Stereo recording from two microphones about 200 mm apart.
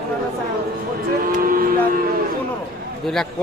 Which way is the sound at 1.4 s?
45° right (ahead or behind).